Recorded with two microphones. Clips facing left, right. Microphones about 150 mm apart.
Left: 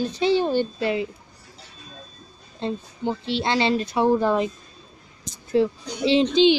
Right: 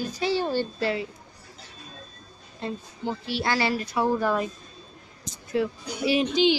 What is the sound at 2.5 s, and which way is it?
Speech, 25° left (ahead or behind).